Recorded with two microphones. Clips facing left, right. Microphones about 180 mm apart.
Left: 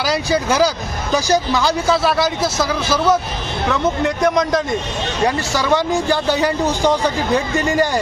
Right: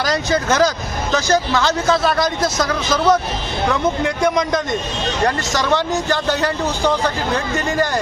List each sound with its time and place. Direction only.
0.0 s a man's voice: 10° left (ahead or behind)